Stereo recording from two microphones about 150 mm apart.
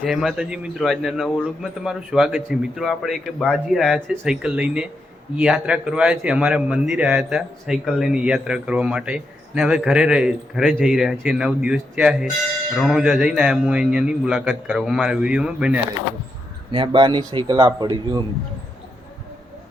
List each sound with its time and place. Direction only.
0.0 s a man's voice: centre (ahead or behind)
16.7 s speech: 30° right (ahead or behind)